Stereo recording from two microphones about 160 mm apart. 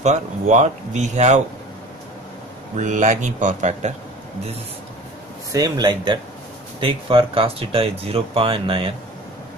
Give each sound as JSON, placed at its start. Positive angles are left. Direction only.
{"t": 0.0, "sound": "speech", "side_deg": -45}
{"t": 2.8, "sound": "speech", "side_deg": -50}
{"t": 5.5, "sound": "speech", "side_deg": -25}